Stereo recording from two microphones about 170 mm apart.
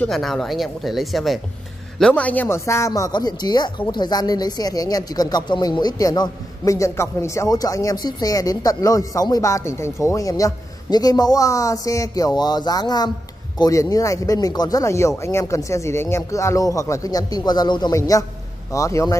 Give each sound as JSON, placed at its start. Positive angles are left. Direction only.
{"t": 0.0, "sound": "speech", "side_deg": 0}